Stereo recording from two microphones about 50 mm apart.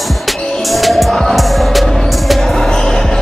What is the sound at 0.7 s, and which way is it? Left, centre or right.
Music, centre.